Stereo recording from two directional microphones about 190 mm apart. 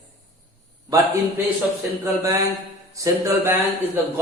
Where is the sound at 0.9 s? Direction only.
20° right (ahead or behind).